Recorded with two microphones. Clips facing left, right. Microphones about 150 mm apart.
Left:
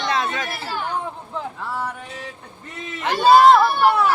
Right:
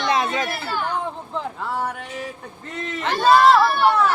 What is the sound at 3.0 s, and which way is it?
Speech, 15° left (ahead or behind).